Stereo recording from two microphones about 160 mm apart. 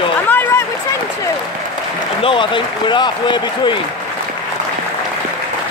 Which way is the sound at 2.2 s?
30° left (ahead or behind).